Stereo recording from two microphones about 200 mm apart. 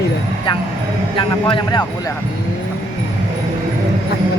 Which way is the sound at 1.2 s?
25° left (ahead or behind).